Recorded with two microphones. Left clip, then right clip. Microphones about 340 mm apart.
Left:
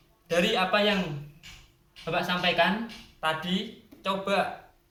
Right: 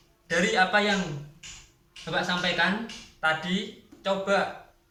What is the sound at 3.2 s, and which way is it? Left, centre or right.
Speech, centre.